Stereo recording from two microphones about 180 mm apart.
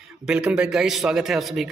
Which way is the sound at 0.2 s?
5° right (ahead or behind).